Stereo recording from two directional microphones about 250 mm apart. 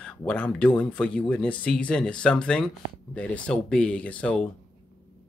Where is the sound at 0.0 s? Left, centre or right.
Centre.